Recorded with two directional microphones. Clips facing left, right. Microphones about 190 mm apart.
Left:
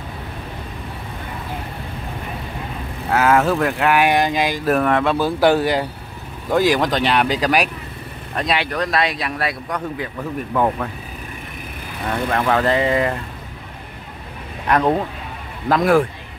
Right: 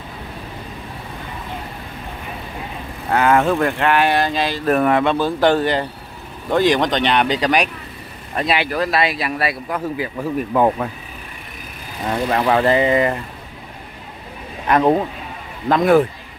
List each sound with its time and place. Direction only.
3.1 s speech: 5° left (ahead or behind)
4.7 s speech: 5° right (ahead or behind)
5.1 s speech: 10° left (ahead or behind)
10.5 s speech: 20° right (ahead or behind)
12.1 s speech: 15° right (ahead or behind)
12.6 s speech: 5° right (ahead or behind)
14.7 s speech: 5° right (ahead or behind)